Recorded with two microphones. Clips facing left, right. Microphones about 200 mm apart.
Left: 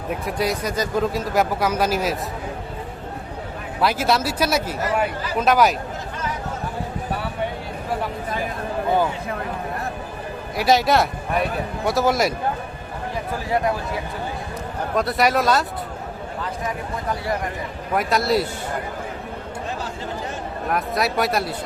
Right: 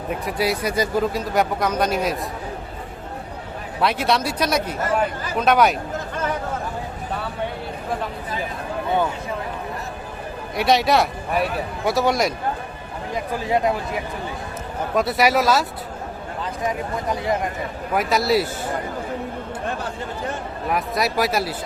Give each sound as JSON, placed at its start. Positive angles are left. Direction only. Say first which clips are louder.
{"t": 0.1, "sound": "speech", "louder": "even", "side_deg": 0}
{"t": 3.8, "sound": "speech", "louder": "even", "side_deg": 0}
{"t": 10.6, "sound": "speech", "louder": "even", "side_deg": 0}
{"t": 13.5, "sound": "speech", "louder": "right 1 dB", "side_deg": -20}
{"t": 14.9, "sound": "speech", "louder": "right 1 dB", "side_deg": -5}
{"t": 16.4, "sound": "speech", "louder": "right 3 dB", "side_deg": -20}
{"t": 17.9, "sound": "speech", "louder": "right 1 dB", "side_deg": 0}
{"t": 20.7, "sound": "speech", "louder": "even", "side_deg": 0}